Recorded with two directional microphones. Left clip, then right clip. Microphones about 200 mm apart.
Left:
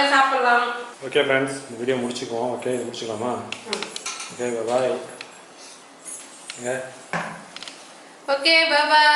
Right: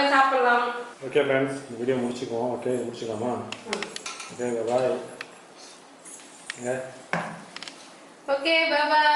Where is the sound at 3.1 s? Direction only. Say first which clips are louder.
Left 3 dB; 20° right (ahead or behind).